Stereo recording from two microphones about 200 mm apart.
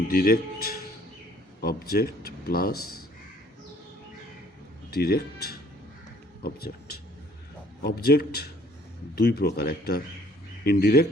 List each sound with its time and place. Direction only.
0.1 s speech: 45° left (ahead or behind)
4.9 s speech: 50° left (ahead or behind)
7.8 s speech: 50° left (ahead or behind)